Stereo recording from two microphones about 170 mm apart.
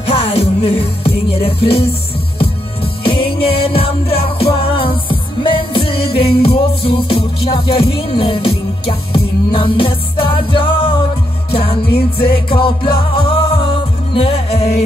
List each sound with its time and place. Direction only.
0.1 s music: 35° left (ahead or behind)
3.0 s music: 30° left (ahead or behind)
11.9 s music: 65° left (ahead or behind)
12.5 s music: 30° left (ahead or behind)